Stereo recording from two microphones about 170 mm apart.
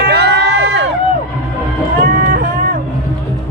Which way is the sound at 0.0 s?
75° right (ahead or behind).